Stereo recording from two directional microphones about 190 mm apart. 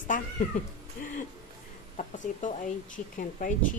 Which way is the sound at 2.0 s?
40° left (ahead or behind).